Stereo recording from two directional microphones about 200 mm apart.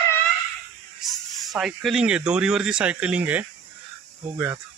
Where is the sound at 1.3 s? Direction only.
Centre (ahead or behind).